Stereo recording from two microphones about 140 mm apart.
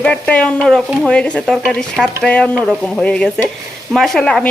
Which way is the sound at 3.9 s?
5° left (ahead or behind).